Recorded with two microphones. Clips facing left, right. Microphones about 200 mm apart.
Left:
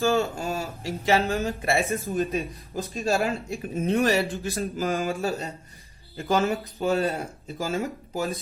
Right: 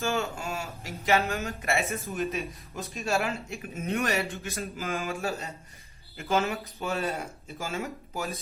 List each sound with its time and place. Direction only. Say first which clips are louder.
0.0 s speech: left 6 dB; 35° left (ahead or behind)
6.1 s speech: left 4 dB; 35° left (ahead or behind)